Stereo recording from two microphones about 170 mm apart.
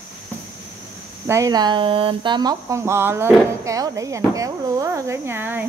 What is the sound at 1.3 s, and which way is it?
Speech, 20° right (ahead or behind).